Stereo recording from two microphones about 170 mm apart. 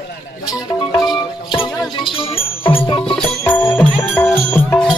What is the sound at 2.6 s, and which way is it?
Music, 30° left (ahead or behind).